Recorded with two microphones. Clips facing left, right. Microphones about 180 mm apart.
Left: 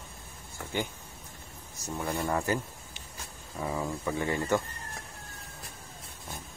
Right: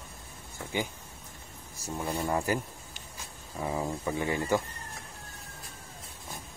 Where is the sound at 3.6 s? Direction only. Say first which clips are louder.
Right 1 dB; 20° right (ahead or behind).